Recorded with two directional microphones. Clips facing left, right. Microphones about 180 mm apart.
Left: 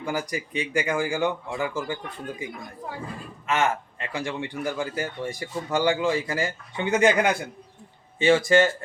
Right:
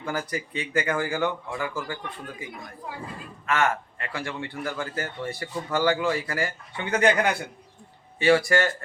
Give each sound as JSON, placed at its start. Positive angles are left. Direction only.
{"t": 0.0, "sound": "a man's voice", "side_deg": 15}
{"t": 8.2, "sound": "a man's voice", "side_deg": 20}